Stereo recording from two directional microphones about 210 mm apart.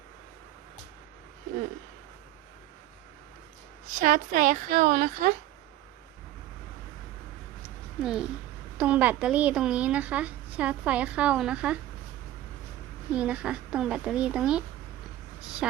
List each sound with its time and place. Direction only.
3.9 s a woman's voice: 40° right (ahead or behind)
8.0 s a woman's voice: 5° right (ahead or behind)
13.1 s a woman's voice: 5° right (ahead or behind)